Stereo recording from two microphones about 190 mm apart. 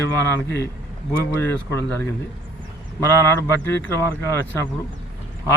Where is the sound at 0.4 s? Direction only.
60° left (ahead or behind).